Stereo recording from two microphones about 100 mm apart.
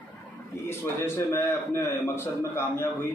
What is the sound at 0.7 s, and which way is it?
A man's voice, 25° left (ahead or behind).